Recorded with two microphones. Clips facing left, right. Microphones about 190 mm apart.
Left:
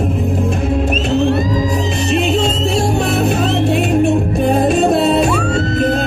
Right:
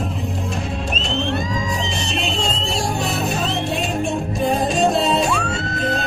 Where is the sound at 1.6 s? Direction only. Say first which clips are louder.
Left 8 dB; 60° left (ahead or behind).